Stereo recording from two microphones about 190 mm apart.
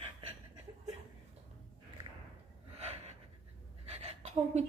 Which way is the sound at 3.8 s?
35° right (ahead or behind).